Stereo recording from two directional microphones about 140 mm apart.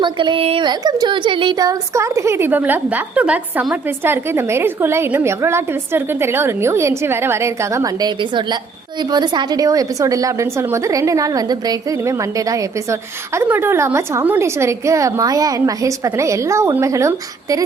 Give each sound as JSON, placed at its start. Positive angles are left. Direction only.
{"t": 0.0, "sound": "speech", "side_deg": -35}